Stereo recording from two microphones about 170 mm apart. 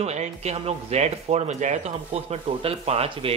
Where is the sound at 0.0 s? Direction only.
40° right (ahead or behind).